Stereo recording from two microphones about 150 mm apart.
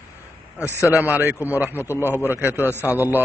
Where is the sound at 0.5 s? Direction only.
20° left (ahead or behind).